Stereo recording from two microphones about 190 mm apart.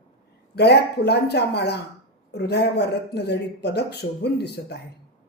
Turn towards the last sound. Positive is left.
turn(degrees=60)  # may be behind; listen again after turning